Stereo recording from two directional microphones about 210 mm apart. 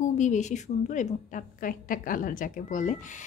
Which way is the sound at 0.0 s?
35° left (ahead or behind).